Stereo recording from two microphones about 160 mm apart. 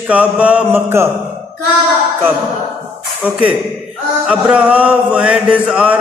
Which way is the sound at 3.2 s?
10° right (ahead or behind).